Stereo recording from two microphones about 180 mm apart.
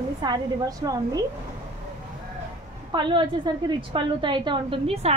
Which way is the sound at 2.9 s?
25° right (ahead or behind).